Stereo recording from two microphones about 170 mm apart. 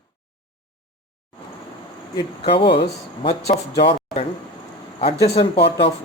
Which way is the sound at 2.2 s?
30° left (ahead or behind).